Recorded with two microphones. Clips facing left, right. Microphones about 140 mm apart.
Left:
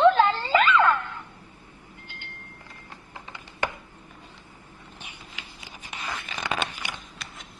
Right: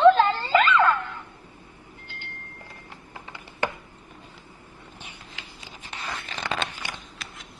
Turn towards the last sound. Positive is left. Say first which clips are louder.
# even
turn(degrees=15)  # may be behind; listen again after turning